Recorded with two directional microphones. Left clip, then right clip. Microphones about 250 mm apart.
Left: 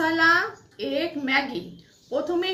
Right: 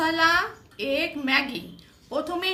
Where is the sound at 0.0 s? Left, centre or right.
Right.